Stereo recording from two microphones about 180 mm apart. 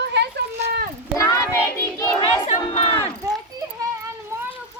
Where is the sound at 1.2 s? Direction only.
15° left (ahead or behind).